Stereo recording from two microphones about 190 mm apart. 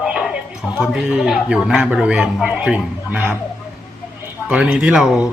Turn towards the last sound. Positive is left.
turn(degrees=0)  # may be behind; listen again after turning